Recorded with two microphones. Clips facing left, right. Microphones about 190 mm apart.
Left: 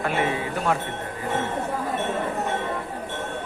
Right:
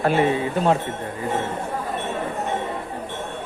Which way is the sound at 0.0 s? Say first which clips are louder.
Right 5 dB; 35° right (ahead or behind).